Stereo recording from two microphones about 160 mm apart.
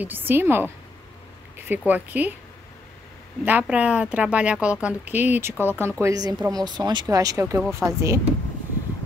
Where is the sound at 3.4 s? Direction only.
10° right (ahead or behind).